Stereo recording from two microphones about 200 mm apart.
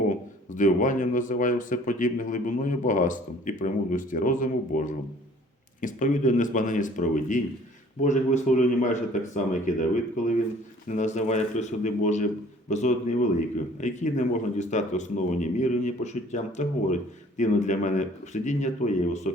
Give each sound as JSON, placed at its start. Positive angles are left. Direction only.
{"t": 0.5, "sound": "speech", "side_deg": 40}